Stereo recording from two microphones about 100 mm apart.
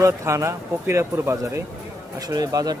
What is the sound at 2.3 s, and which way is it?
Speech, 40° right (ahead or behind).